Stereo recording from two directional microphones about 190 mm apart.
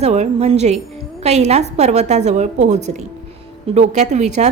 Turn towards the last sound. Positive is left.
turn(degrees=-35)  # may be behind; listen again after turning